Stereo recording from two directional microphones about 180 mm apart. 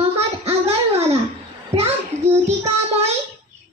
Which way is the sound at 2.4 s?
35° right (ahead or behind).